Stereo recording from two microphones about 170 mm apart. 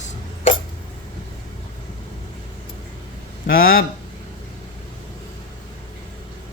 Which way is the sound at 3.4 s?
55° left (ahead or behind).